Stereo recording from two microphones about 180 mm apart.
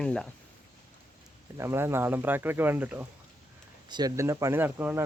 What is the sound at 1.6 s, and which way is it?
Speech, 15° right (ahead or behind).